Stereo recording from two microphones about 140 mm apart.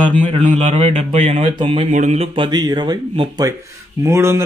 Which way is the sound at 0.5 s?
45° right (ahead or behind).